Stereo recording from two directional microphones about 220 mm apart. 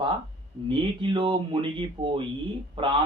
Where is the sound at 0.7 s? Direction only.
20° right (ahead or behind).